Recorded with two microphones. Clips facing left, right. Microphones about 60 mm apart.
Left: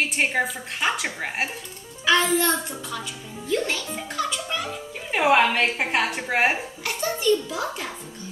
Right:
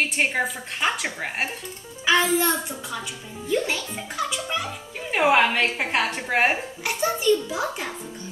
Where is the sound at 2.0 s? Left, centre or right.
Centre.